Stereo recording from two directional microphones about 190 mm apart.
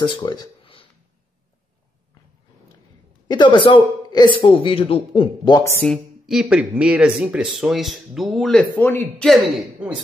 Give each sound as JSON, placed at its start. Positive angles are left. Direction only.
{"t": 0.0, "sound": "speech", "side_deg": 25}
{"t": 3.3, "sound": "speech", "side_deg": 25}
{"t": 5.9, "sound": "speech", "side_deg": 0}